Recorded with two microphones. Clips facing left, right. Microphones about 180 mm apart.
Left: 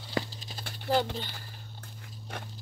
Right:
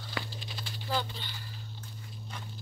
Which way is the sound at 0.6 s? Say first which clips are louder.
Left 6 dB; 60° left (ahead or behind).